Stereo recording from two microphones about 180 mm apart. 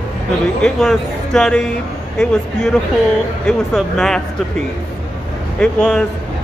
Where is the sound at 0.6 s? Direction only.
5° left (ahead or behind).